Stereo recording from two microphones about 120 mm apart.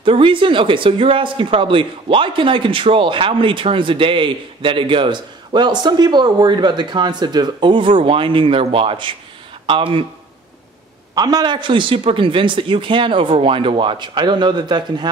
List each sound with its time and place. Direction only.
0.0 s speech: 45° right (ahead or behind)
11.1 s speech: 35° right (ahead or behind)